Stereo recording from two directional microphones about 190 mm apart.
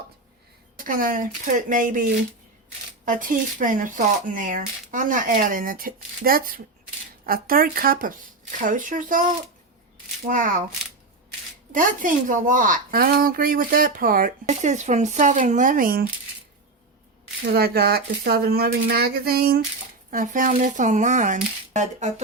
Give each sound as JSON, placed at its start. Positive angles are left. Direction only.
{"t": 0.9, "sound": "a woman's voice", "side_deg": -45}
{"t": 3.1, "sound": "a woman's voice", "side_deg": -45}
{"t": 10.2, "sound": "a woman's voice", "side_deg": -45}
{"t": 11.7, "sound": "a woman's voice", "side_deg": -45}
{"t": 17.5, "sound": "speech", "side_deg": -55}